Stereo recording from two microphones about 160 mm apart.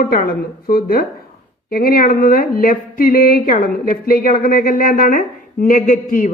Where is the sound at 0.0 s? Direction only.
60° left (ahead or behind).